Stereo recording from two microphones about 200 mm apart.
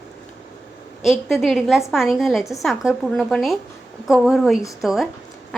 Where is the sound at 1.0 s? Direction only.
Centre (ahead or behind).